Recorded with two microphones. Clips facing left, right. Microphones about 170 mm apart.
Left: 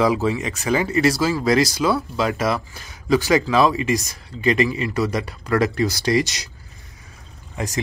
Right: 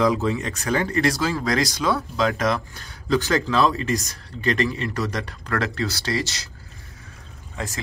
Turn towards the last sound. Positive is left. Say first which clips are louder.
# left 3 dB
turn(degrees=15)  # may be behind; listen again after turning